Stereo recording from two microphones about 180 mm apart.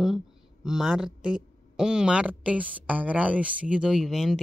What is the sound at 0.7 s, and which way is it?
Speech, 5° right (ahead or behind).